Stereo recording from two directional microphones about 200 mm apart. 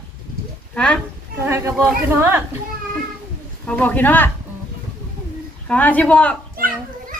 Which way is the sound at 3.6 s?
5° left (ahead or behind).